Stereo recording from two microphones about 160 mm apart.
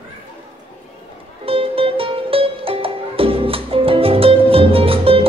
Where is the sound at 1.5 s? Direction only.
35° right (ahead or behind).